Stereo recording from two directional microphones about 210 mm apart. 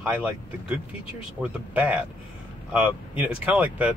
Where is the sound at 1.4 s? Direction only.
5° right (ahead or behind).